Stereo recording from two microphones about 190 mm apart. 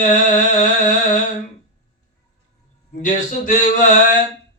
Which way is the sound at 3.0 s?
45° left (ahead or behind).